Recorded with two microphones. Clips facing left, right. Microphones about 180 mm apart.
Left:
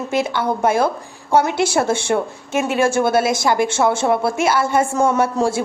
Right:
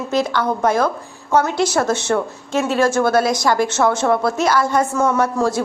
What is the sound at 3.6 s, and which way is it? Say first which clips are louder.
A woman's voice: even; 10° left (ahead or behind).